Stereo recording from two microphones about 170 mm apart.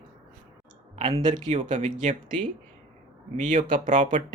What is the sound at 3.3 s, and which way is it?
Speech, 50° right (ahead or behind).